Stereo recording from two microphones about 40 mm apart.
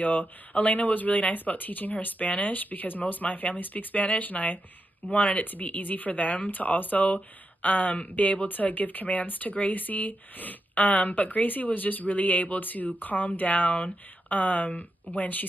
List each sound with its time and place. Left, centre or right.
0.0 s speech: left
5.4 s speech: left